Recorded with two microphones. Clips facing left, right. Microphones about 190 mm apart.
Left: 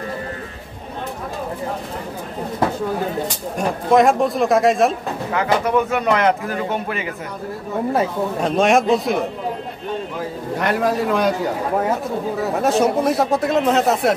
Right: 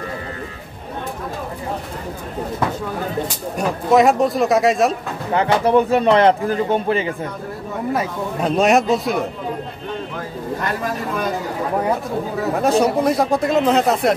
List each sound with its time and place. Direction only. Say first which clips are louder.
3.5 s speech: even; centre (ahead or behind)
5.3 s speech: right 3 dB; 30° right (ahead or behind)
8.4 s speech: right 1 dB; centre (ahead or behind)
10.6 s a man's voice: left 7 dB; 75° left (ahead or behind)
12.4 s speech: right 1 dB; centre (ahead or behind)